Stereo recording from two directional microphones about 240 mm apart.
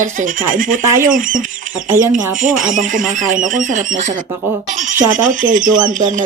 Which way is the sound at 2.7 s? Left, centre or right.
Right.